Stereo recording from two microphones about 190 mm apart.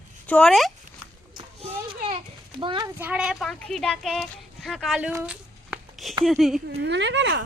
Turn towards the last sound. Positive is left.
turn(degrees=-70)  # may be behind; listen again after turning